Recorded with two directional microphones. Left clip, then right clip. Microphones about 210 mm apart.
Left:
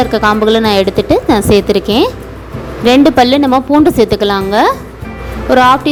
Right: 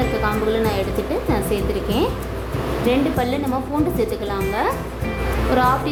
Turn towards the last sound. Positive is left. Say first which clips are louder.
# left 10 dB
turn(degrees=40)  # may be behind; listen again after turning